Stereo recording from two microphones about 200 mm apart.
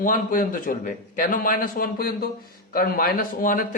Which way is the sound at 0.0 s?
40° left (ahead or behind).